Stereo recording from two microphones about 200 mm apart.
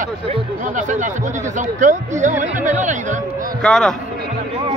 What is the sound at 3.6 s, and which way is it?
Speech, centre (ahead or behind).